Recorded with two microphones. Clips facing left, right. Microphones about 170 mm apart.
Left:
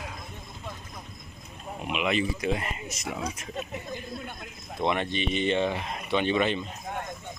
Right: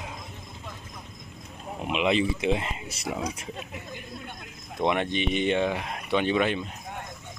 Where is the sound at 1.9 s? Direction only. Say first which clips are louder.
Right 3 dB; 25° right (ahead or behind).